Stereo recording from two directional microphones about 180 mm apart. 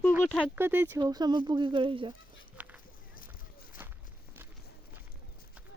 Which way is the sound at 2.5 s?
10° right (ahead or behind).